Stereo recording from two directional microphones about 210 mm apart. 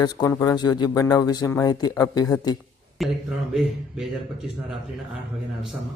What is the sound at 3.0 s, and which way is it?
Speech, centre (ahead or behind).